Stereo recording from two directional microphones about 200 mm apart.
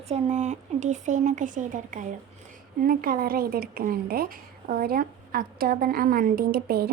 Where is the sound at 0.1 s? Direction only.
35° right (ahead or behind).